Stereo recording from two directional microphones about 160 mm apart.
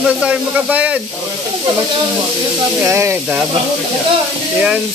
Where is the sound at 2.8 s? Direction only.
15° right (ahead or behind).